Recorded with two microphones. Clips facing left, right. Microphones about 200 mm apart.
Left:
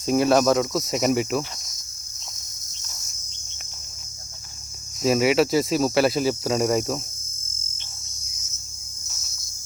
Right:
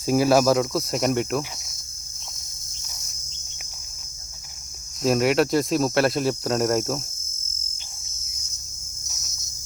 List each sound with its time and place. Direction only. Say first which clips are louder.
0.0 s cricket: even; 5° right (ahead or behind)
5.0 s cricket: left 1 dB; centre (ahead or behind)